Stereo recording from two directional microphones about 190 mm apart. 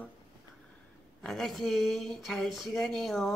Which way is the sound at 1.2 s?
Centre (ahead or behind).